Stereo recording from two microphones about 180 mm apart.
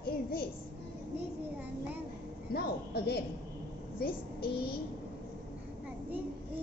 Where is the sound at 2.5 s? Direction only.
60° left (ahead or behind).